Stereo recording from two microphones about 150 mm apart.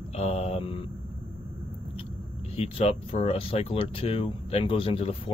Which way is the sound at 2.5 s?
40° left (ahead or behind).